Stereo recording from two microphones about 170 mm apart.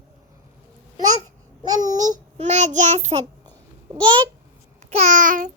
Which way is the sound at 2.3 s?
45° right (ahead or behind).